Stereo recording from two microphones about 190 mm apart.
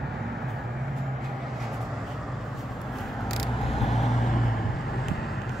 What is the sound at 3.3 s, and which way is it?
Vehicle, centre (ahead or behind).